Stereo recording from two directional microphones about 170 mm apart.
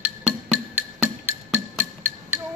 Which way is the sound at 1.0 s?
10° right (ahead or behind).